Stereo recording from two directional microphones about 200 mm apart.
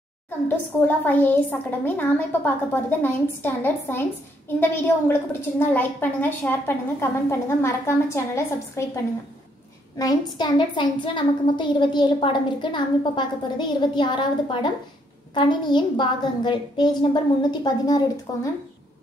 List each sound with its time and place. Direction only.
0.5 s a woman's voice: 10° left (ahead or behind)
9.9 s a woman's voice: 20° left (ahead or behind)